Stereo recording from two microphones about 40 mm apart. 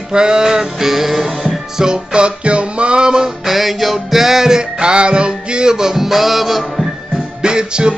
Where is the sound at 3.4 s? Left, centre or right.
Centre.